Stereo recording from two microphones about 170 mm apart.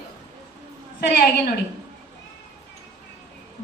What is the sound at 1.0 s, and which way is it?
Speech, 65° left (ahead or behind).